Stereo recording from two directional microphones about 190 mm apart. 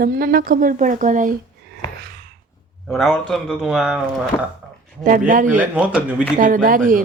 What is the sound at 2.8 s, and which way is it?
A man's voice, centre (ahead or behind).